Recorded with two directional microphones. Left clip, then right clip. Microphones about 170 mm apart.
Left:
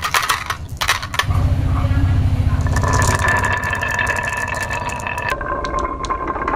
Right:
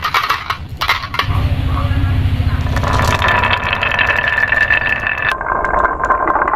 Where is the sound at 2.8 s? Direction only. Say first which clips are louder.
Right 3 dB; centre (ahead or behind).